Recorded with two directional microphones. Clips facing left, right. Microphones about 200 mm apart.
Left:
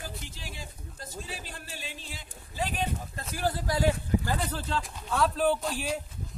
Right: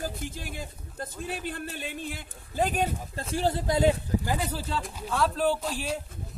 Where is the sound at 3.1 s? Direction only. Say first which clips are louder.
Right 5 dB; 25° right (ahead or behind).